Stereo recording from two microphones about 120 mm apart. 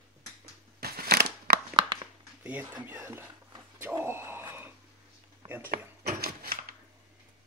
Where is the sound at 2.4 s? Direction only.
15° right (ahead or behind).